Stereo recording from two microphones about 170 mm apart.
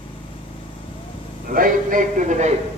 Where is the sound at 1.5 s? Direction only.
55° right (ahead or behind).